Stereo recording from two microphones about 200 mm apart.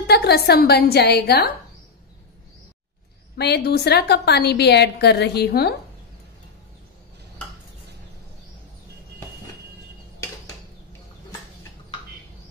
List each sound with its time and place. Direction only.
0.0 s a woman's voice: 55° left (ahead or behind)
3.3 s a woman's voice: 55° left (ahead or behind)